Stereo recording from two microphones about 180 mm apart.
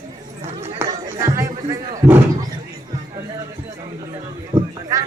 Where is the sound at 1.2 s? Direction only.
15° right (ahead or behind).